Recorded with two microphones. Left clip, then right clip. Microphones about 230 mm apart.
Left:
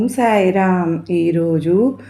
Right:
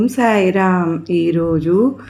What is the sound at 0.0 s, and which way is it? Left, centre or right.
Speech, right.